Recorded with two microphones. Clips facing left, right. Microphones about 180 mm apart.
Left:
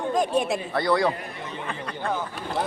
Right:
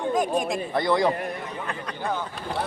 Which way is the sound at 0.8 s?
20° right (ahead or behind).